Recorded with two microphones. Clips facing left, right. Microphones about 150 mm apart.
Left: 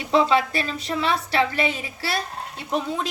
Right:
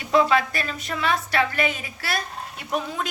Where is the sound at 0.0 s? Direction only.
25° left (ahead or behind).